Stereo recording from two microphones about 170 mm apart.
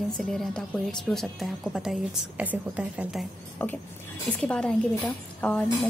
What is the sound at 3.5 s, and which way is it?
A woman's voice, 10° left (ahead or behind).